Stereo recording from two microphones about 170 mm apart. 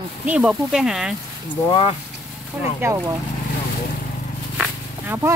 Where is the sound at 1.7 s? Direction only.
30° left (ahead or behind).